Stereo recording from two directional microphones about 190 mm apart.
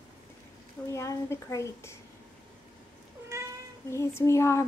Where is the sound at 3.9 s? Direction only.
15° left (ahead or behind).